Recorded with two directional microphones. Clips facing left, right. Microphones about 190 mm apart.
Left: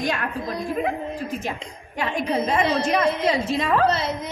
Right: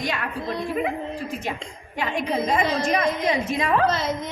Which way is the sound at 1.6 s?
40° left (ahead or behind).